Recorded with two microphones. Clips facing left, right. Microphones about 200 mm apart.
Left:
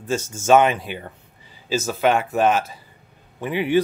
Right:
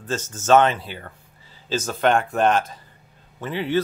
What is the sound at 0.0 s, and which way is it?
Speech, 10° left (ahead or behind).